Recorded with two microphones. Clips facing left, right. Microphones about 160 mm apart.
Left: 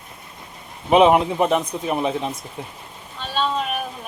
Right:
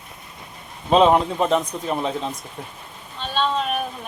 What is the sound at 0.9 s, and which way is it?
Speech, 15° left (ahead or behind).